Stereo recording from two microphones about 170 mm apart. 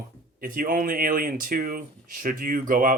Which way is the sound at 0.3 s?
55° right (ahead or behind).